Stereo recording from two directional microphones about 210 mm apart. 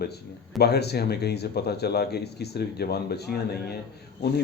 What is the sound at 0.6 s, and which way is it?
Speech, 50° left (ahead or behind).